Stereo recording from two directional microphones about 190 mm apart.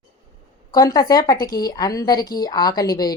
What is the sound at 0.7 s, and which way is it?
A woman's voice, 20° left (ahead or behind).